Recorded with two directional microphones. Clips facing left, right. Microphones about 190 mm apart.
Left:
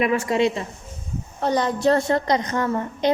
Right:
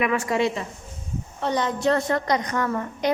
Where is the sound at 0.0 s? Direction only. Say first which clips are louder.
Left 3 dB; 25° left (ahead or behind).